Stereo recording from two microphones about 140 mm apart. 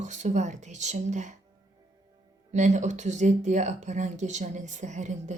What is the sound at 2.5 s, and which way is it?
Speech, 60° right (ahead or behind).